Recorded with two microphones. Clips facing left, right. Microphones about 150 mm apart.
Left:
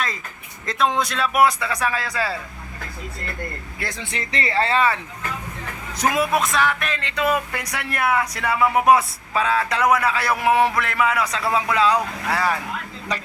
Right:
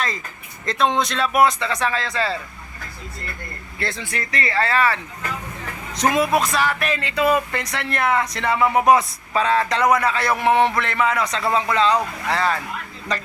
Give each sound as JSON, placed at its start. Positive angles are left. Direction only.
{"t": 0.6, "sound": "a man's voice", "side_deg": 5}
{"t": 3.8, "sound": "speech", "side_deg": 15}
{"t": 6.0, "sound": "a man's voice", "side_deg": 5}